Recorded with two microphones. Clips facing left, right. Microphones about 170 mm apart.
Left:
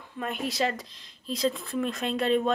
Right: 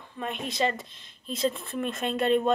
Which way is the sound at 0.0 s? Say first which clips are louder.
Left 2 dB; 5° left (ahead or behind).